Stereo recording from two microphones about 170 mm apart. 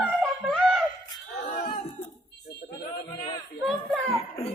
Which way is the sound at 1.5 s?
50° left (ahead or behind).